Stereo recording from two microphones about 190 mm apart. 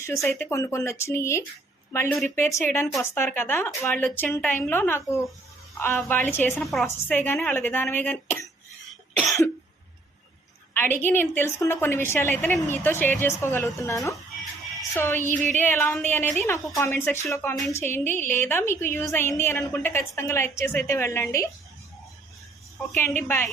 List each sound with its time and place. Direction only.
0.0 s a woman's voice: 15° left (ahead or behind)
8.9 s cough: centre (ahead or behind)
10.8 s a woman's voice: 10° left (ahead or behind)
23.0 s a woman's voice: 10° left (ahead or behind)